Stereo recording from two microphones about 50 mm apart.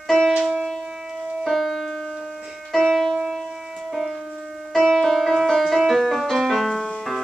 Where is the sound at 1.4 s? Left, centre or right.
Centre.